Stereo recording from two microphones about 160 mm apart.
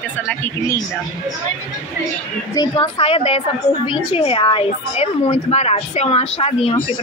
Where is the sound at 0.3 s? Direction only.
15° left (ahead or behind).